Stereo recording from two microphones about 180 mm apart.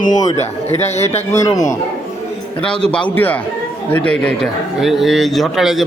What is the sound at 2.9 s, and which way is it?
A man's voice, 5° left (ahead or behind).